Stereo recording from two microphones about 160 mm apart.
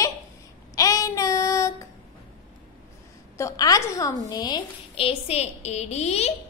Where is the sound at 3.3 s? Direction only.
20° left (ahead or behind).